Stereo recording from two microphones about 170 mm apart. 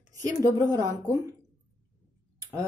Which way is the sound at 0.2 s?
20° right (ahead or behind).